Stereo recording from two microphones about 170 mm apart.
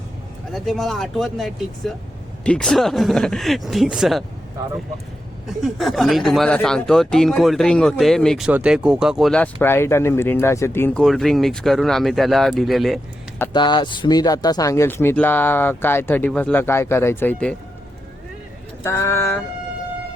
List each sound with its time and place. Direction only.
0.5 s speech: centre (ahead or behind)
5.5 s speech: centre (ahead or behind)
13.5 s speech: 25° left (ahead or behind); by 17.6 s 10° left (ahead or behind)
18.8 s speech: 15° left (ahead or behind)